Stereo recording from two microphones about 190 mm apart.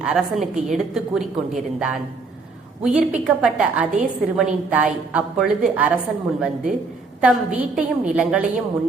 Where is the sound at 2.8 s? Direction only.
5° right (ahead or behind).